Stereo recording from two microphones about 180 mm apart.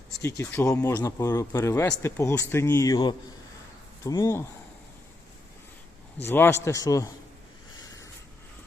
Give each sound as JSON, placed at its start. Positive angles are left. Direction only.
{"t": 0.2, "sound": "speech", "side_deg": 15}
{"t": 6.2, "sound": "speech", "side_deg": 10}